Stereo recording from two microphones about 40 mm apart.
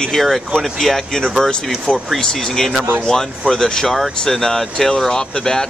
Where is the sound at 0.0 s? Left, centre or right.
Centre.